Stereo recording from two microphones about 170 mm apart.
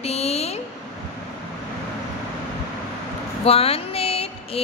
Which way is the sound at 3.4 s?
35° left (ahead or behind).